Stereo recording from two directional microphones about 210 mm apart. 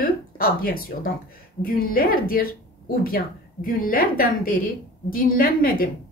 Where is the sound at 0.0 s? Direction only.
45° left (ahead or behind).